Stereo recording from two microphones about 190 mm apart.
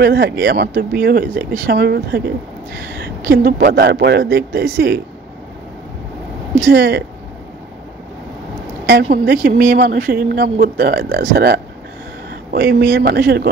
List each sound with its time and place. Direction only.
0.0 s speech: 55° right (ahead or behind)
6.7 s speech: 60° right (ahead or behind)
9.1 s speech: 50° right (ahead or behind)